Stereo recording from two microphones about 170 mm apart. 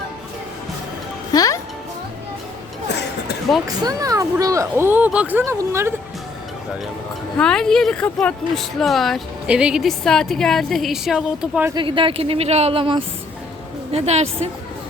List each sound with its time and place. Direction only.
1.3 s music: 20° left (ahead or behind)
3.8 s speech: 20° right (ahead or behind)
7.3 s speech: 5° left (ahead or behind)
11.7 s speech: 30° right (ahead or behind)